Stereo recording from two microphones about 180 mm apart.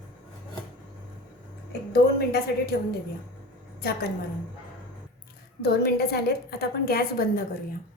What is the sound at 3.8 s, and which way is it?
Speech, 60° left (ahead or behind).